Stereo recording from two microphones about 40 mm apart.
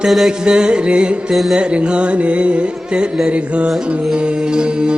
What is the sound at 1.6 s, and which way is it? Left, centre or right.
Music, right.